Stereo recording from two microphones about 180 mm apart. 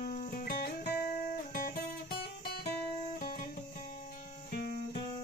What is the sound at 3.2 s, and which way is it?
Music, 55° left (ahead or behind).